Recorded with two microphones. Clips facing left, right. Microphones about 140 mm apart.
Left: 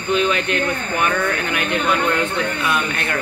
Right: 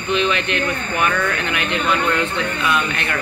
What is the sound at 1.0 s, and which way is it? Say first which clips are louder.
Speech: even; 30° left (ahead or behind).